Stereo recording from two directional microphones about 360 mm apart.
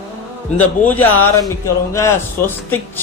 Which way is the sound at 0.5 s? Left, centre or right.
Centre.